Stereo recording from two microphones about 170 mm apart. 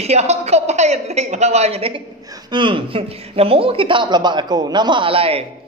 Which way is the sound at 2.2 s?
20° right (ahead or behind).